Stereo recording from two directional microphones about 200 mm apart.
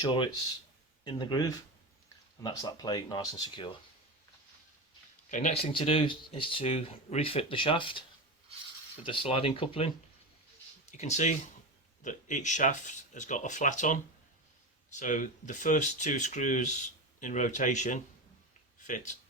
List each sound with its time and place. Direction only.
0.0 s speech: 25° left (ahead or behind)
5.3 s speech: 35° left (ahead or behind)
9.0 s speech: 25° left (ahead or behind)
10.9 s speech: 35° left (ahead or behind)